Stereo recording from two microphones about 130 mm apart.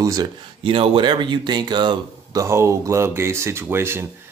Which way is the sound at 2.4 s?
20° right (ahead or behind).